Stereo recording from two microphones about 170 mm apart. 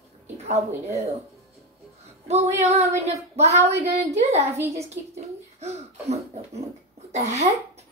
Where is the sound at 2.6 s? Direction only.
40° right (ahead or behind).